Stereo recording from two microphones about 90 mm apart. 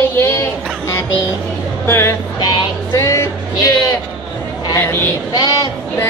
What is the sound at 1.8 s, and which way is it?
Speech, 25° left (ahead or behind).